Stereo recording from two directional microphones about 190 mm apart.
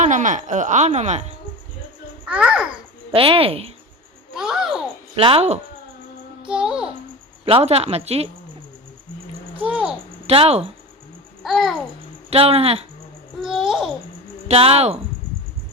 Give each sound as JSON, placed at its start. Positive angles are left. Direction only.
{"t": 0.0, "sound": "speech", "side_deg": -40}
{"t": 2.3, "sound": "a child's voice", "side_deg": -5}
{"t": 3.1, "sound": "speech", "side_deg": -30}
{"t": 4.4, "sound": "a child's voice", "side_deg": -5}
{"t": 5.1, "sound": "speech", "side_deg": -30}
{"t": 6.4, "sound": "a child's voice", "side_deg": -5}
{"t": 7.4, "sound": "speech", "side_deg": -30}
{"t": 9.6, "sound": "a child's voice", "side_deg": -5}
{"t": 10.2, "sound": "speech", "side_deg": -30}
{"t": 11.4, "sound": "a child's voice", "side_deg": 0}
{"t": 12.3, "sound": "speech", "side_deg": -30}
{"t": 13.4, "sound": "babbling", "side_deg": 0}
{"t": 14.4, "sound": "speech", "side_deg": -30}